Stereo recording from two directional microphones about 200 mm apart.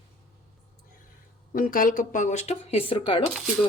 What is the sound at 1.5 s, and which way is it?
Speech, 45° left (ahead or behind).